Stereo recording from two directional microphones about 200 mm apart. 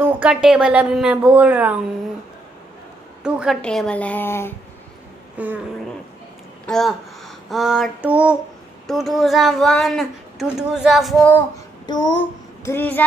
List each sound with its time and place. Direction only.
0.0 s speech: 5° right (ahead or behind)
3.3 s a woman's voice: 5° right (ahead or behind)
5.4 s speech: 10° right (ahead or behind)
6.6 s speech: centre (ahead or behind)
11.8 s child singing: 20° left (ahead or behind)
12.6 s a woman's voice: 10° left (ahead or behind)